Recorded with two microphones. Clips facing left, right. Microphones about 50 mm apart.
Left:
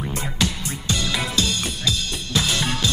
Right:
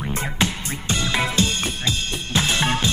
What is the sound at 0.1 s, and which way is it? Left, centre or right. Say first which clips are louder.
Music: right 3 dB; right.